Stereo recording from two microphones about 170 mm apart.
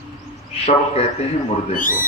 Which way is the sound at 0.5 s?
35° left (ahead or behind).